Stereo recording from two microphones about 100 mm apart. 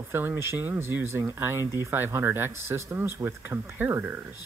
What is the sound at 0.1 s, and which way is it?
Speech, 25° right (ahead or behind).